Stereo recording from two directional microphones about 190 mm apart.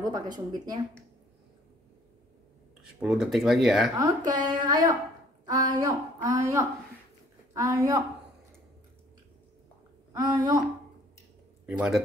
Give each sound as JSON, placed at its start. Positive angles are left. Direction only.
{"t": 0.0, "sound": "speech", "side_deg": -20}
{"t": 2.8, "sound": "speech", "side_deg": -5}
{"t": 4.0, "sound": "a woman's voice", "side_deg": -20}
{"t": 10.1, "sound": "speech", "side_deg": -20}
{"t": 11.6, "sound": "speech", "side_deg": -5}